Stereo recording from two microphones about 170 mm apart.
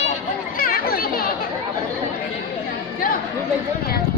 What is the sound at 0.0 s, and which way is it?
Chatter, 50° left (ahead or behind).